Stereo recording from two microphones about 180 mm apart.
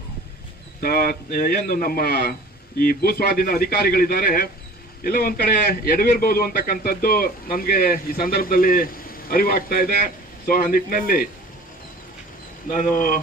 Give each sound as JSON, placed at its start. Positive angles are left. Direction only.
{"t": 0.8, "sound": "a man's voice", "side_deg": 55}
{"t": 12.7, "sound": "a man's voice", "side_deg": 50}